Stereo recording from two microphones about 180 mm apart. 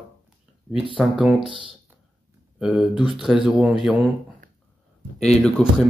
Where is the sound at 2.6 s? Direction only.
5° right (ahead or behind).